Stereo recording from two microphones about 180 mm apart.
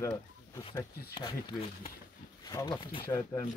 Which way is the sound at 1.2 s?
25° left (ahead or behind).